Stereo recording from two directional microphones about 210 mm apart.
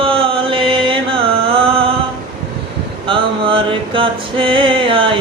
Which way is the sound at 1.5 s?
25° right (ahead or behind).